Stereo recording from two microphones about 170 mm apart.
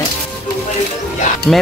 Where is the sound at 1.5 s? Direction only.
5° left (ahead or behind).